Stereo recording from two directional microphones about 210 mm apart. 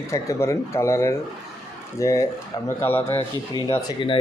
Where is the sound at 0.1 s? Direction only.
15° left (ahead or behind).